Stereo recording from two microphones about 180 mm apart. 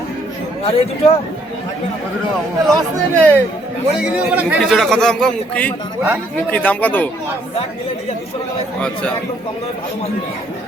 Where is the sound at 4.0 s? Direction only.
5° right (ahead or behind); by 7.1 s 10° left (ahead or behind).